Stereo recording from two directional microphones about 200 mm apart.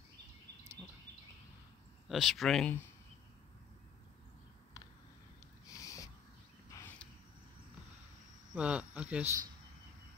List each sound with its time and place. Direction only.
2.0 s speech: centre (ahead or behind)
5.7 s a sound: 15° left (ahead or behind)
8.5 s speech: 5° right (ahead or behind)